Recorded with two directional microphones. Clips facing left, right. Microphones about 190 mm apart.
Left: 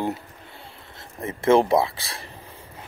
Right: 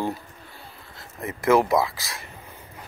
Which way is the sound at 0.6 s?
25° left (ahead or behind).